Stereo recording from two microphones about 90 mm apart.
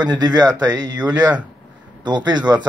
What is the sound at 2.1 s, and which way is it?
Speech, 55° right (ahead or behind).